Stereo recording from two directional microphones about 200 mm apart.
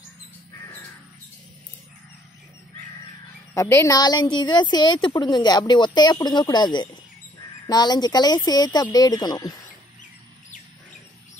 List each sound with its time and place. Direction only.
3.5 s a woman's voice: 15° left (ahead or behind)